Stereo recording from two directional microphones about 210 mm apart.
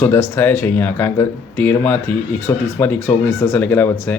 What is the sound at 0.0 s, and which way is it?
Speech, 10° left (ahead or behind).